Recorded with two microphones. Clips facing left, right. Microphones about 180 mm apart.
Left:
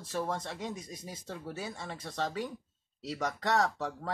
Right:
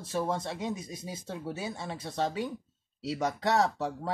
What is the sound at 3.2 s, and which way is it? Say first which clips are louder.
Speech: right 3 dB; 5° right (ahead or behind).